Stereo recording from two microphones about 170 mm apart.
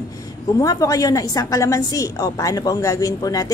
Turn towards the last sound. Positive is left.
turn(degrees=20)  # may be behind; listen again after turning